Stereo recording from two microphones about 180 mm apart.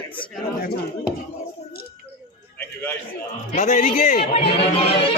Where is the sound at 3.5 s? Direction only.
40° left (ahead or behind).